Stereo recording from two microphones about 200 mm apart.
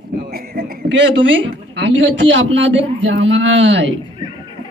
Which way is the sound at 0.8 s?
65° right (ahead or behind).